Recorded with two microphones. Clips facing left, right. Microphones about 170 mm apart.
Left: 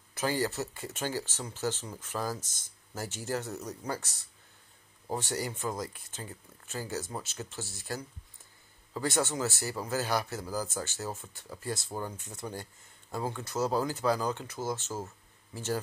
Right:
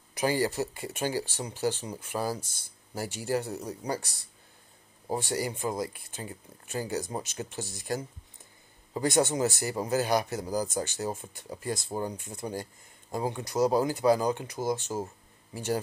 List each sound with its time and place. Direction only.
0.1 s speech: 15° right (ahead or behind)